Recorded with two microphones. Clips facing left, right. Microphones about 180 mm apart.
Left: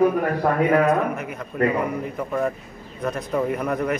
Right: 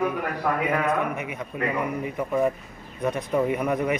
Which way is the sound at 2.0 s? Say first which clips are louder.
Right 1 dB; 5° right (ahead or behind).